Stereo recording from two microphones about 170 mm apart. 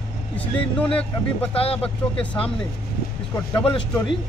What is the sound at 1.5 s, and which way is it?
Speech, 35° left (ahead or behind).